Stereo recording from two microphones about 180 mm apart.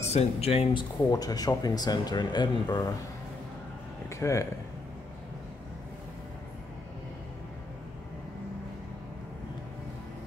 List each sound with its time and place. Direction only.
0.1 s speech: 35° left (ahead or behind)
4.1 s speech: 15° left (ahead or behind)